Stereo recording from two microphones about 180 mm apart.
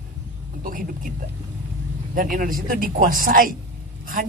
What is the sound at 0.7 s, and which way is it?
Speech, 50° right (ahead or behind).